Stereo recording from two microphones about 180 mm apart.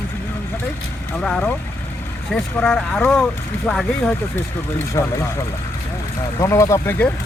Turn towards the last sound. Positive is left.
turn(degrees=10)  # may be behind; listen again after turning